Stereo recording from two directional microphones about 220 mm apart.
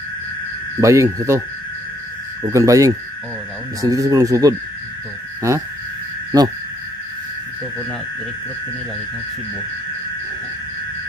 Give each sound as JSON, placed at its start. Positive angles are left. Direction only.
{"t": 0.7, "sound": "speech", "side_deg": -10}
{"t": 2.4, "sound": "speech", "side_deg": -15}